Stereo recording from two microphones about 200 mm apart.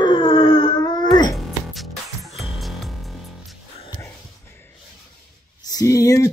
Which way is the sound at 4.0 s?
10° left (ahead or behind).